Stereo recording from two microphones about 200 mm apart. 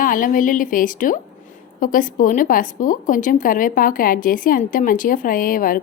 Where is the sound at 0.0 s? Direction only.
45° left (ahead or behind).